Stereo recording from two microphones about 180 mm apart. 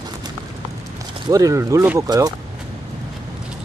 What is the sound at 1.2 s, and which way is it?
Speech, 20° right (ahead or behind).